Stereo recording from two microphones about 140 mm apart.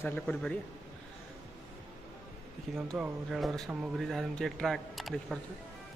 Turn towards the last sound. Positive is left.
turn(degrees=0)  # may be behind; listen again after turning